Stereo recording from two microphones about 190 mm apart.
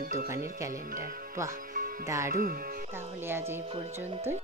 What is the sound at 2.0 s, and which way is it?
Speech, 15° right (ahead or behind).